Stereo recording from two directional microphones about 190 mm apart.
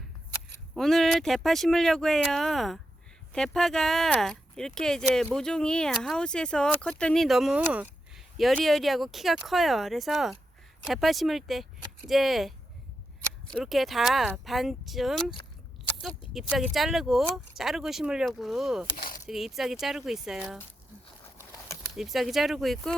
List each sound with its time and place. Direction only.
0.7 s speech: centre (ahead or behind)
16.3 s speech: centre (ahead or behind)
18.9 s speech: 45° left (ahead or behind)
19.3 s speech: centre (ahead or behind)
21.9 s speech: centre (ahead or behind)